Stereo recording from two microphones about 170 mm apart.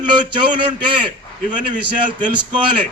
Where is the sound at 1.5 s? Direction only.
50° right (ahead or behind).